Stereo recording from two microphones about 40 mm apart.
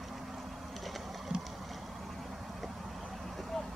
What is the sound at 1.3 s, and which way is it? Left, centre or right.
Vehicle, right.